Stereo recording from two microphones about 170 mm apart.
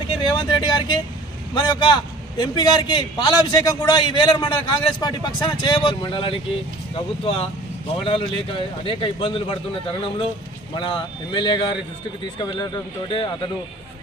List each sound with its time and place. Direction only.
0.3 s a man's voice: 25° left (ahead or behind)
7.9 s a man's voice: 30° left (ahead or behind)